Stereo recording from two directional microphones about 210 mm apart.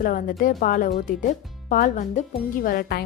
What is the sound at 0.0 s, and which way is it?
Speech, 40° left (ahead or behind).